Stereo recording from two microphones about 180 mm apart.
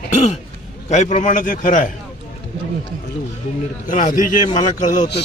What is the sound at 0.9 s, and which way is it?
A man's voice, 40° left (ahead or behind).